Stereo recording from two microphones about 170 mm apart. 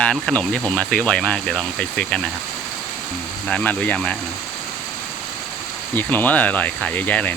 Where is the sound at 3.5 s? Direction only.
10° left (ahead or behind).